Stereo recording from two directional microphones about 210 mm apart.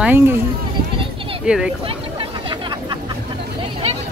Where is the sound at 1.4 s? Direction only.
5° right (ahead or behind).